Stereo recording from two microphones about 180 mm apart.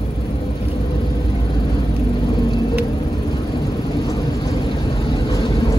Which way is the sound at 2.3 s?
25° left (ahead or behind).